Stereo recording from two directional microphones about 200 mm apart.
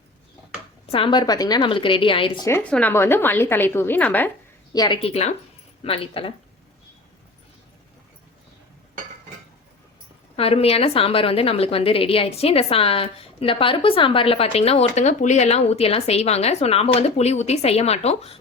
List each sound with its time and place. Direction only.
0.9 s a woman's voice: 25° left (ahead or behind)
2.5 s a woman's voice: 5° left (ahead or behind)
4.7 s a woman's voice: 20° left (ahead or behind)
10.3 s a woman's voice: 30° left (ahead or behind)